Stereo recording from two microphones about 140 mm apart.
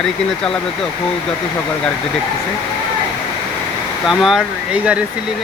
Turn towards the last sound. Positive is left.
turn(degrees=-5)  # may be behind; listen again after turning